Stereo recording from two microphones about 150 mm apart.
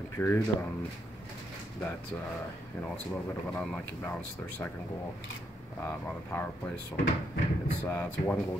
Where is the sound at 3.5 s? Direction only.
10° left (ahead or behind).